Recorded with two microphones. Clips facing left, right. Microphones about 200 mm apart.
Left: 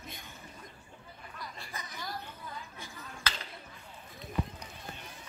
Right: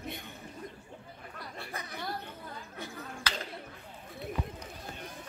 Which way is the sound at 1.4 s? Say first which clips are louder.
Right 3 dB; 60° right (ahead or behind).